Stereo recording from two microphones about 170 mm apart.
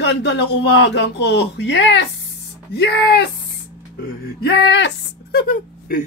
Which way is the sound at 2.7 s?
75° left (ahead or behind).